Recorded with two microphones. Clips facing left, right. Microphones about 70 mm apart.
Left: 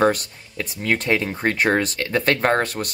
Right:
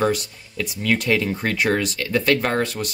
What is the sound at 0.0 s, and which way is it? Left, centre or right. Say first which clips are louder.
Speech: left 3 dB; left.